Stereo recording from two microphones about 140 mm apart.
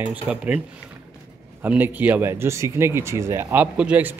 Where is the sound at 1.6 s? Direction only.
10° right (ahead or behind).